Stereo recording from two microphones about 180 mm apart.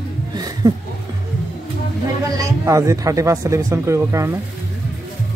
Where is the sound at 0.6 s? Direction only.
20° right (ahead or behind).